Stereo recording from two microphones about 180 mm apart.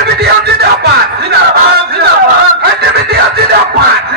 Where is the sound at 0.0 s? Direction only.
60° right (ahead or behind).